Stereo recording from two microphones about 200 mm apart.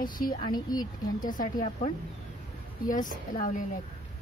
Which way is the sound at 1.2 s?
40° left (ahead or behind).